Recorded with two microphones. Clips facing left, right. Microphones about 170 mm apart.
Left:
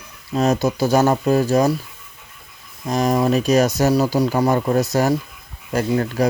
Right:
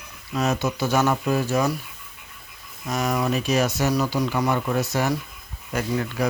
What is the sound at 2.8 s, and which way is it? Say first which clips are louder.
Speech: left 6 dB; 35° left (ahead or behind).